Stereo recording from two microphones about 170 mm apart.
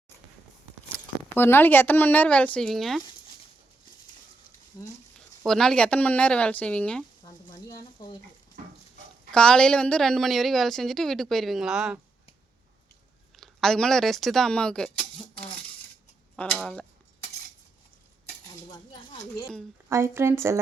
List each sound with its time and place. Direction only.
0.9 s speech: 10° left (ahead or behind)
4.7 s speech: 20° left (ahead or behind)
5.5 s speech: 5° left (ahead or behind)
9.3 s a woman's voice: 5° left (ahead or behind)
13.3 s a woman's voice: centre (ahead or behind)
19.9 s speech: 15° right (ahead or behind)